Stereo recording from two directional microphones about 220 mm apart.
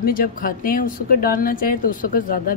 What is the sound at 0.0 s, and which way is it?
Speech, 40° left (ahead or behind).